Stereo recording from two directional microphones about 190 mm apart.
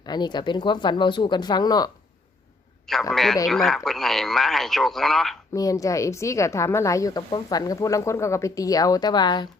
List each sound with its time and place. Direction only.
0.0 s speech: 20° left (ahead or behind)
2.8 s a man's voice: centre (ahead or behind)
5.5 s a woman's voice: 20° left (ahead or behind)